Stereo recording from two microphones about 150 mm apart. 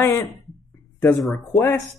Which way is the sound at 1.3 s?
20° left (ahead or behind).